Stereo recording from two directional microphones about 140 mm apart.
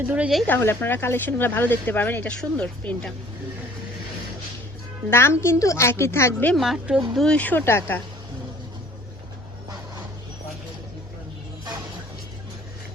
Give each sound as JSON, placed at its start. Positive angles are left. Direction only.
{"t": 0.1, "sound": "speech", "side_deg": -5}
{"t": 0.4, "sound": "speech", "side_deg": 15}
{"t": 5.1, "sound": "a woman's voice", "side_deg": 20}
{"t": 6.5, "sound": "speech", "side_deg": 0}
{"t": 7.3, "sound": "speech", "side_deg": 10}